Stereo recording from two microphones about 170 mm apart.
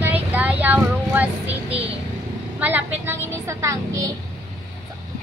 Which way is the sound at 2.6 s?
10° right (ahead or behind).